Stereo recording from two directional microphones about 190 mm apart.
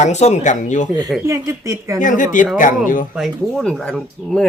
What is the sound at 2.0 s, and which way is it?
Speech, 45° left (ahead or behind).